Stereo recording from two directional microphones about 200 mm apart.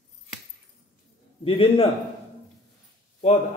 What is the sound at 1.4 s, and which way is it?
Speech, 25° left (ahead or behind).